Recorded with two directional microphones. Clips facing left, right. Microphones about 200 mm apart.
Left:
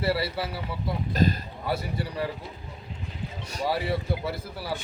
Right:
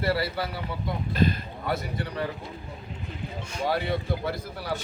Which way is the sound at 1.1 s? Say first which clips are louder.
Even; 40° left (ahead or behind).